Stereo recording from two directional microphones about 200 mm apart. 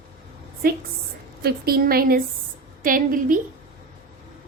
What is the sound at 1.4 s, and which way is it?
A woman's voice, 50° right (ahead or behind).